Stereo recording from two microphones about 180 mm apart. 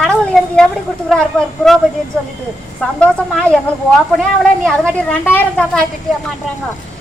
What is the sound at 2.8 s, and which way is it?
A woman's voice, 5° left (ahead or behind).